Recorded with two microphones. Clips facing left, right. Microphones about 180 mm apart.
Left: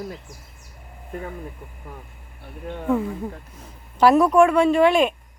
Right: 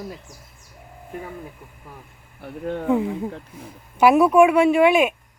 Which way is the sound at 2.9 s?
20° right (ahead or behind).